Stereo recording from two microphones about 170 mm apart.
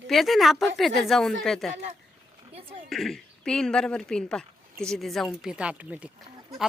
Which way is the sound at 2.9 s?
Centre (ahead or behind).